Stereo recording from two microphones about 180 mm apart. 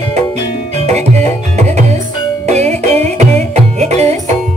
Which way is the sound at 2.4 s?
40° right (ahead or behind).